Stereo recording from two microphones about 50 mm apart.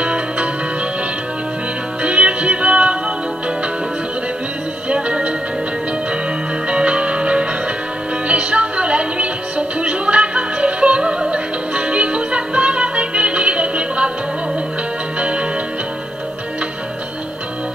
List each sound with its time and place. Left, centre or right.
0.0 s music: right
2.0 s music: right
4.8 s music: right
6.7 s music: right
15.1 s music: right